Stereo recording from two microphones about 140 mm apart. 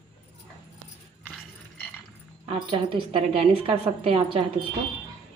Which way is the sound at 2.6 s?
40° right (ahead or behind).